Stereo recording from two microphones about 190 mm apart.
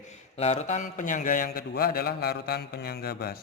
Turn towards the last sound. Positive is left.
turn(degrees=55)  # may be behind; listen again after turning